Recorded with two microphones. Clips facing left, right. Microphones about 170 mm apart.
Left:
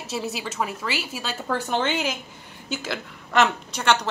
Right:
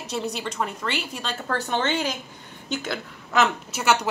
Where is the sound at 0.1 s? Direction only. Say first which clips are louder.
Right 1 dB; 5° left (ahead or behind).